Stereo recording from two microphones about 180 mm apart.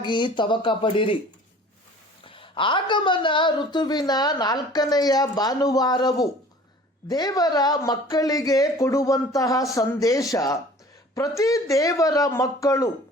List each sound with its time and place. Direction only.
0.0 s a woman's voice: 25° left (ahead or behind)
2.2 s a woman's voice: 30° left (ahead or behind)